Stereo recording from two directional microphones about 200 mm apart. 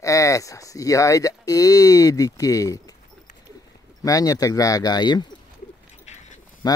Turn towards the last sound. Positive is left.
turn(degrees=20)  # may be behind; listen again after turning